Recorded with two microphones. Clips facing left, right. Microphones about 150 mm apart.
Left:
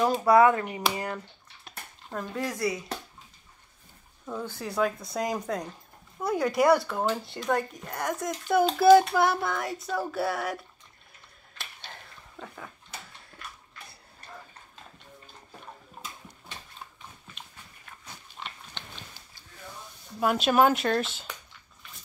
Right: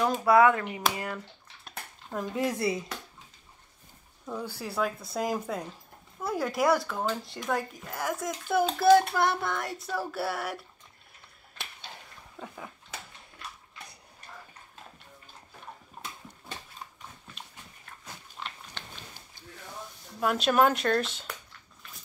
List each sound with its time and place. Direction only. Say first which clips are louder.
0.1 s a child's voice: even; centre (ahead or behind)
2.3 s speech: right 1 dB; 25° right (ahead or behind)
4.3 s a child's voice: left 1 dB; 5° right (ahead or behind)
11.5 s finger snapping: even; 10° right (ahead or behind)
18.0 s biting: right 1 dB; 5° right (ahead or behind)
20.2 s speech: left 2 dB; centre (ahead or behind)